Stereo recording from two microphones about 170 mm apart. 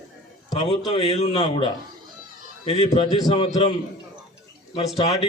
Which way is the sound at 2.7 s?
35° left (ahead or behind).